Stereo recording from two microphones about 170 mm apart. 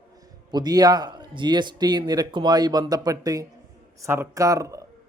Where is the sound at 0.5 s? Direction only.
25° right (ahead or behind).